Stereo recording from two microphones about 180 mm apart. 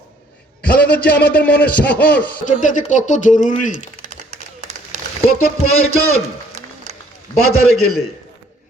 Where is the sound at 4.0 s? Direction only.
45° right (ahead or behind).